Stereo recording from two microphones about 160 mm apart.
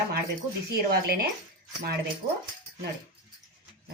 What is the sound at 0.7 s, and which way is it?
Speech, 75° right (ahead or behind).